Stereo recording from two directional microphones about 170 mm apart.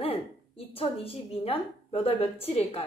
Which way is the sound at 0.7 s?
35° left (ahead or behind).